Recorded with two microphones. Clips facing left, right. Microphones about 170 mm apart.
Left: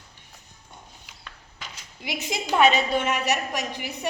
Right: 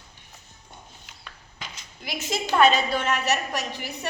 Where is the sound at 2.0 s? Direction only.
15° left (ahead or behind).